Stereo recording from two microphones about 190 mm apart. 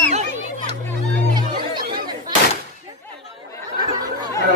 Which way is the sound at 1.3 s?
25° right (ahead or behind).